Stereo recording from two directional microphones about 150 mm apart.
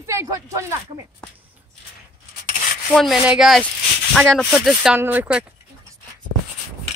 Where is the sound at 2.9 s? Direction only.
Centre (ahead or behind).